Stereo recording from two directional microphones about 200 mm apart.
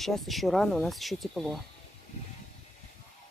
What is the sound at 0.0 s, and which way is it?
Speech, centre (ahead or behind).